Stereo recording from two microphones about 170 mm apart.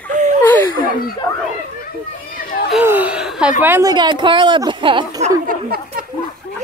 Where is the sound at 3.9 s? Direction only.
25° right (ahead or behind).